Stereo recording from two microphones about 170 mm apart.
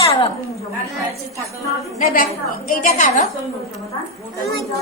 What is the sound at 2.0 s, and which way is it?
A woman's voice, 55° left (ahead or behind).